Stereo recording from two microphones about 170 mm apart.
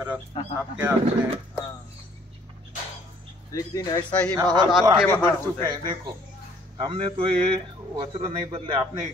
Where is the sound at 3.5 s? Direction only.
20° left (ahead or behind).